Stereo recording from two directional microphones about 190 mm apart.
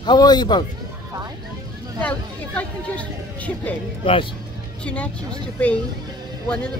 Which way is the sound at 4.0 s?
30° left (ahead or behind).